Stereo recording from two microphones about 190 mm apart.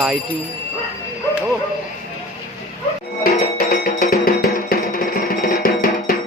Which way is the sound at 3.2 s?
50° left (ahead or behind).